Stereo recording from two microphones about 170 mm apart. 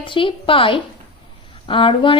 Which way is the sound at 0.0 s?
30° left (ahead or behind).